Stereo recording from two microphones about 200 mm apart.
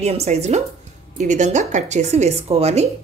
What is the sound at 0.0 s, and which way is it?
Speech, 35° right (ahead or behind).